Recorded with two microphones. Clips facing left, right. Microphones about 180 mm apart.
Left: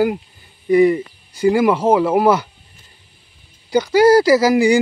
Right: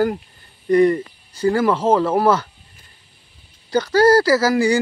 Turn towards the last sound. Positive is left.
turn(degrees=15)  # may be behind; listen again after turning